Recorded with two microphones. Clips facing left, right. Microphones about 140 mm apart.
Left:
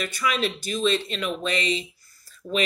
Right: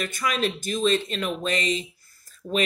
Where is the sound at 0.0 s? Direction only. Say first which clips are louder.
Even; 45° right (ahead or behind).